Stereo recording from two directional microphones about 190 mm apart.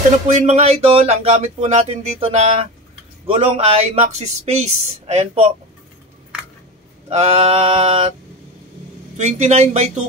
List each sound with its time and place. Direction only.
0.3 s speech: 40° right (ahead or behind)
7.1 s speech: 30° right (ahead or behind)
9.1 s speech: 40° right (ahead or behind)